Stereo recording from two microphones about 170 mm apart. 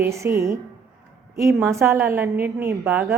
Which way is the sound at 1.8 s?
15° right (ahead or behind).